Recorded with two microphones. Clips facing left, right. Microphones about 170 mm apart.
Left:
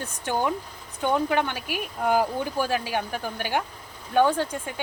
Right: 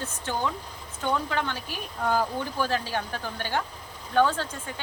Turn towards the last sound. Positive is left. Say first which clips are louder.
# left 2 dB
turn(degrees=15)  # may be behind; listen again after turning